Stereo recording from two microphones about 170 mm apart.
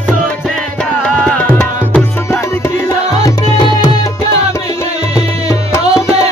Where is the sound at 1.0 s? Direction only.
5° left (ahead or behind).